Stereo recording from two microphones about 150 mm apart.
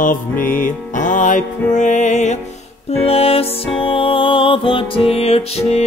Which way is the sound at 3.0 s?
40° left (ahead or behind).